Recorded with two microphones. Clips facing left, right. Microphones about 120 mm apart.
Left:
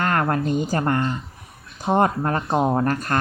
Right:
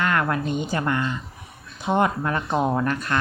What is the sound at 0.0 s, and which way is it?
A woman's voice, 40° left (ahead or behind).